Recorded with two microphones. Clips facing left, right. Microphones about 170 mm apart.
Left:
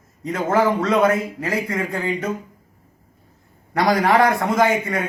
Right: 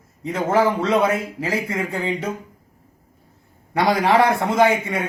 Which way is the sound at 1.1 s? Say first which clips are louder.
Left 1 dB; 25° right (ahead or behind).